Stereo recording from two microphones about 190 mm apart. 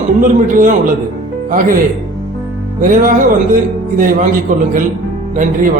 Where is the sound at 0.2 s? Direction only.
45° right (ahead or behind).